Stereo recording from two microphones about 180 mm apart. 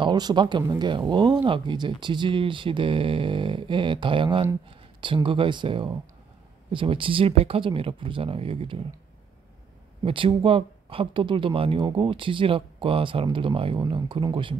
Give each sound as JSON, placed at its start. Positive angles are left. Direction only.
{"t": 0.0, "sound": "speech", "side_deg": -25}
{"t": 10.0, "sound": "speech", "side_deg": -30}